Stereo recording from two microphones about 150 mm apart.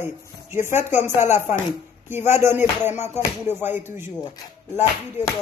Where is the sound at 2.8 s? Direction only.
15° right (ahead or behind).